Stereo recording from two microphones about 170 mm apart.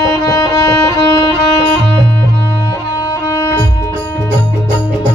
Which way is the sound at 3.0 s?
20° left (ahead or behind).